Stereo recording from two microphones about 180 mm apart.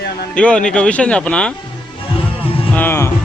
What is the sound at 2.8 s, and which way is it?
Speech, 15° left (ahead or behind).